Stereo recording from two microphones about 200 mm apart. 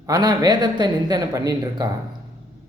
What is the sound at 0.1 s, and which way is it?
Speech, 20° right (ahead or behind).